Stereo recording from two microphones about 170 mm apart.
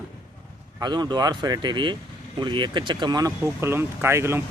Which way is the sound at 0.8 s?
25° right (ahead or behind).